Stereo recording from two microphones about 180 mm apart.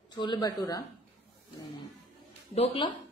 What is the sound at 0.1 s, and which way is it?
Speech, 25° left (ahead or behind).